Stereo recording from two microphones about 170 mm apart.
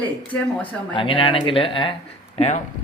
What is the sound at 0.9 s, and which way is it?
Speech, 30° left (ahead or behind).